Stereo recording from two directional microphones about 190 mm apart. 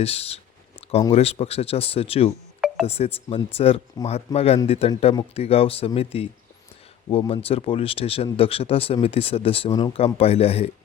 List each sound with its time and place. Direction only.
0.0 s speech: 30° left (ahead or behind)
4.0 s speech: 20° left (ahead or behind)
4.4 s speech: 30° left (ahead or behind)